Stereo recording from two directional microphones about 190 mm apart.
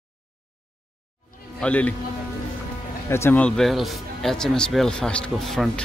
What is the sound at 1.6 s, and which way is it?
Speech, 5° left (ahead or behind).